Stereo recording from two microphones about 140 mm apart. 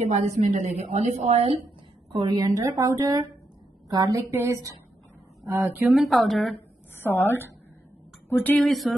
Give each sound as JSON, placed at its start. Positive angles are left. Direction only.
{"t": 0.0, "sound": "a woman's voice", "side_deg": -55}
{"t": 2.1, "sound": "speech", "side_deg": -30}
{"t": 5.9, "sound": "speech", "side_deg": 0}
{"t": 7.0, "sound": "a woman's voice", "side_deg": 15}
{"t": 8.6, "sound": "speech", "side_deg": 0}